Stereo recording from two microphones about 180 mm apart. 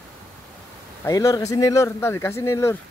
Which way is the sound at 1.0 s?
20° left (ahead or behind).